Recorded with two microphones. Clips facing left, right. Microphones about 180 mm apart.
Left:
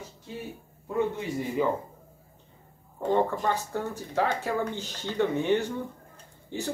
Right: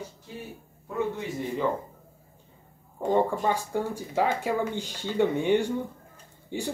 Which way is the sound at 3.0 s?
10° right (ahead or behind).